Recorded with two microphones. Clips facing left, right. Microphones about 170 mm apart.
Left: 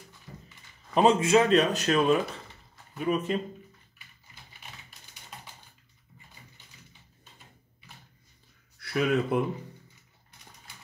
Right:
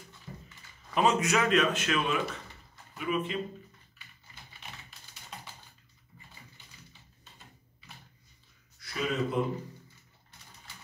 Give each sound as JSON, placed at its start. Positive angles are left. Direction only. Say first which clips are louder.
{"t": 0.9, "sound": "speech", "louder": "left 6 dB", "side_deg": 30}
{"t": 8.7, "sound": "speech", "louder": "left 6 dB", "side_deg": 60}